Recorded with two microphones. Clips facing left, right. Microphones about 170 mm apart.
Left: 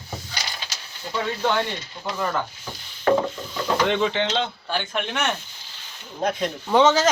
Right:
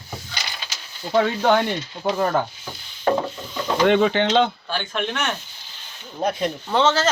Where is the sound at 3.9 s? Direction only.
55° right (ahead or behind).